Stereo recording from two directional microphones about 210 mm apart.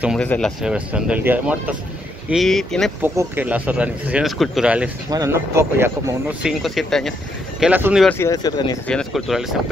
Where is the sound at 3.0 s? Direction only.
10° right (ahead or behind).